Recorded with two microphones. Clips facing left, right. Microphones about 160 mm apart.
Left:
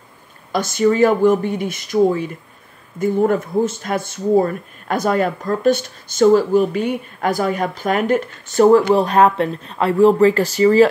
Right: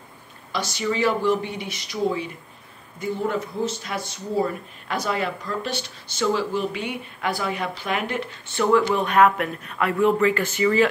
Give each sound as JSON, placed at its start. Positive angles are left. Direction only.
{"t": 0.5, "sound": "speech", "side_deg": 50}